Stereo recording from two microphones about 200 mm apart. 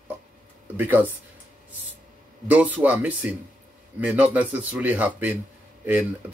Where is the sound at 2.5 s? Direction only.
10° right (ahead or behind).